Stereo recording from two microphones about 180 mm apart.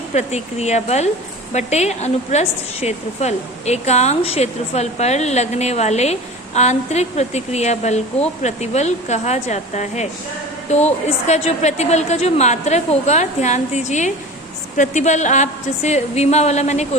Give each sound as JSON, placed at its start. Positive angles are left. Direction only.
{"t": 0.1, "sound": "a woman's voice", "side_deg": 40}